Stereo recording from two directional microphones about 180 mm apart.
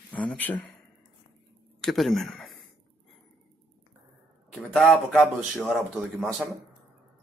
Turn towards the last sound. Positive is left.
turn(degrees=0)  # may be behind; listen again after turning